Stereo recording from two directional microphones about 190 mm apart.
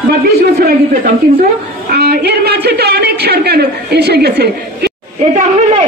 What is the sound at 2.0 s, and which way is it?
A man's voice, 55° right (ahead or behind).